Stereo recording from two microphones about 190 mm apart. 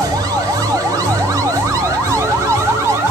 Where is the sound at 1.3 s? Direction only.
15° right (ahead or behind).